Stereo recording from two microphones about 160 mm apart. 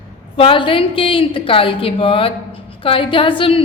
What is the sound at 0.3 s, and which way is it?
A woman's voice, 35° left (ahead or behind).